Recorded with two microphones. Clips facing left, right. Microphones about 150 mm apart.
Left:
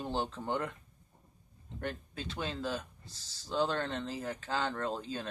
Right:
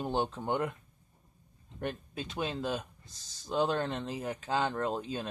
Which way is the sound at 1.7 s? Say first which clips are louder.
Right 2 dB; 15° right (ahead or behind).